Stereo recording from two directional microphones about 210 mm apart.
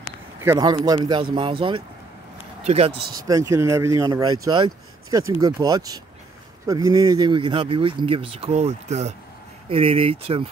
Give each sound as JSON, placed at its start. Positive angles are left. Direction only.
{"t": 0.4, "sound": "speech", "side_deg": -15}
{"t": 3.3, "sound": "speech", "side_deg": -15}